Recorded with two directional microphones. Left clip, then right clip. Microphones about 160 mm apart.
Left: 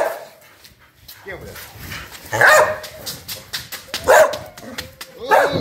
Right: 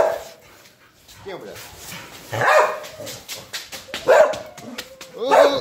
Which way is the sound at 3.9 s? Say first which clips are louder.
Left 2 dB; 90° left.